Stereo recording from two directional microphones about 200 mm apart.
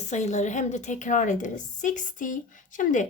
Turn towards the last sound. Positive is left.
turn(degrees=40)  # may be behind; listen again after turning